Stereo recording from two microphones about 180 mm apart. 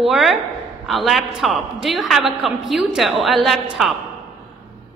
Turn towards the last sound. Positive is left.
turn(degrees=0)  # may be behind; listen again after turning